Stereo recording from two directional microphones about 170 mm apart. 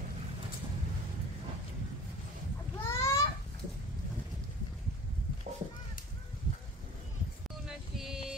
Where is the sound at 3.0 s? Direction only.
20° left (ahead or behind).